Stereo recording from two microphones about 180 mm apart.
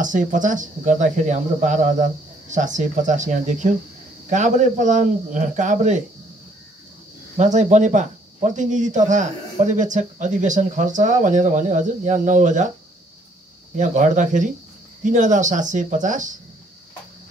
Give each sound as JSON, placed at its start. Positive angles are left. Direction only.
{"t": 0.0, "sound": "speech", "side_deg": -45}
{"t": 7.3, "sound": "speech", "side_deg": -40}
{"t": 13.7, "sound": "speech", "side_deg": -45}